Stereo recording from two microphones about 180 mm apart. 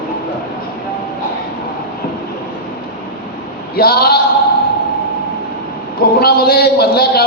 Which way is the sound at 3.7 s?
60° left (ahead or behind).